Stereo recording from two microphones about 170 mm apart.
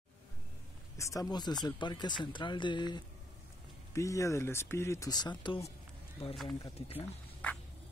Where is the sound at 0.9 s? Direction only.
20° left (ahead or behind).